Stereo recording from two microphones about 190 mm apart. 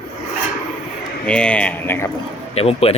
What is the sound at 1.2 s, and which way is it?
Speech, 5° left (ahead or behind).